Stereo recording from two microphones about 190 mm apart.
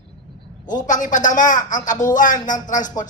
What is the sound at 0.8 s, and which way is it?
A man's voice, 40° left (ahead or behind).